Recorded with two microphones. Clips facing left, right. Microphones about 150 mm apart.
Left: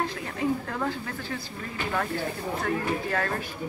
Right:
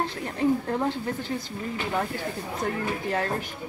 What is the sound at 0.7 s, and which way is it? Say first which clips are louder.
Speech: right 4 dB; 25° right (ahead or behind).